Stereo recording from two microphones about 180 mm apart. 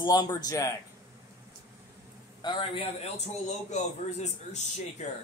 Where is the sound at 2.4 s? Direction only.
25° left (ahead or behind).